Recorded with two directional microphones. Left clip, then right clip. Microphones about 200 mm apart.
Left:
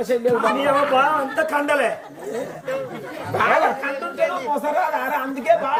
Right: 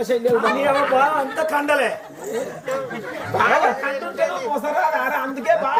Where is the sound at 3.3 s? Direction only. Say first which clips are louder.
Right 1 dB; centre (ahead or behind).